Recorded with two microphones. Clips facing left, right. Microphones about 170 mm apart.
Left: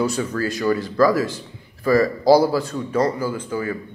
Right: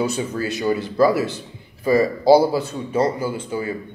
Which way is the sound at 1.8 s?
20° right (ahead or behind).